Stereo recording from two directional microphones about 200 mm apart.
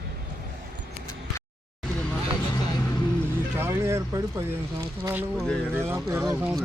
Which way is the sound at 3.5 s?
15° right (ahead or behind).